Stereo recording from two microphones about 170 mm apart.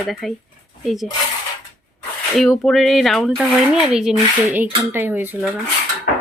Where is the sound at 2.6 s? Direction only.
Centre (ahead or behind).